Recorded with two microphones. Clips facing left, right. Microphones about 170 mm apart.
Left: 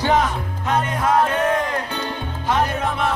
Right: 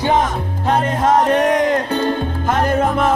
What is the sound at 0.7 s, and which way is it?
Music, 30° right (ahead or behind).